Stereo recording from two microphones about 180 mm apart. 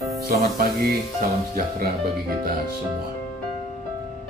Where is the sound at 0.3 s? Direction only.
55° right (ahead or behind).